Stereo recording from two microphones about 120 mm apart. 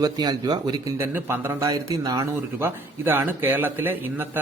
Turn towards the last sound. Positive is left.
turn(degrees=-15)  # may be behind; listen again after turning